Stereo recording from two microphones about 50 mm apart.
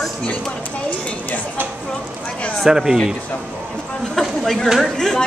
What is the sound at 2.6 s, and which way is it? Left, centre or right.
Speech, centre.